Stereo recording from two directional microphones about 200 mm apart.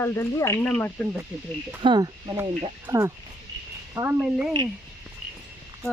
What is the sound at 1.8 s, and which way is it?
Speech, 20° right (ahead or behind).